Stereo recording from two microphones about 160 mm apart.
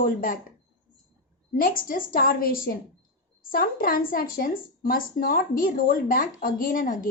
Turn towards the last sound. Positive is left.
turn(degrees=60)  # may be behind; listen again after turning